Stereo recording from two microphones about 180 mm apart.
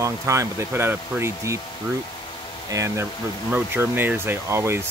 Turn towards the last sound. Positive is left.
turn(degrees=-15)  # may be behind; listen again after turning